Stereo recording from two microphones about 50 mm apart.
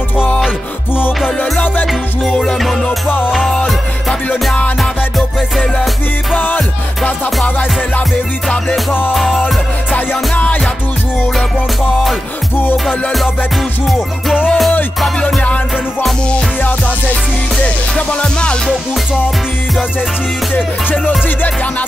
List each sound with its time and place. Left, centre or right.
1.4 s music: left
6.3 s music: left
9.1 s music: centre
9.9 s music: left
12.7 s music: centre
13.9 s music: centre
17.9 s music: centre